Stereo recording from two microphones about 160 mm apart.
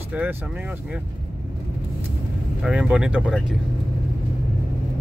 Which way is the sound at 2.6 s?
5° right (ahead or behind).